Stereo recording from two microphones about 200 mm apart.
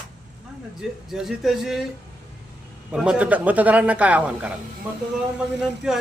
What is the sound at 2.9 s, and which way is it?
A man's voice, 5° right (ahead or behind).